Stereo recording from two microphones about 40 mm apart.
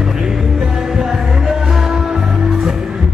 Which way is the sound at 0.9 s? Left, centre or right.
Centre.